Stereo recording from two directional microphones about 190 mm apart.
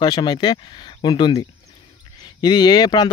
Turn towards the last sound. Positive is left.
turn(degrees=20)  # may be behind; listen again after turning